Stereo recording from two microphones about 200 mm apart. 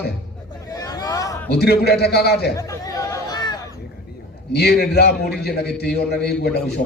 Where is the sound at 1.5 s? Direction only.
55° left (ahead or behind).